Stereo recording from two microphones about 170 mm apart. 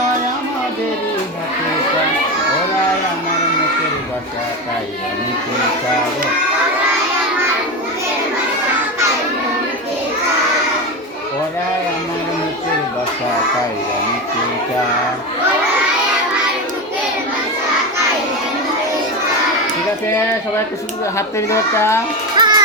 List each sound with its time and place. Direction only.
21.2 s speech: 15° left (ahead or behind)
22.4 s music: 25° right (ahead or behind)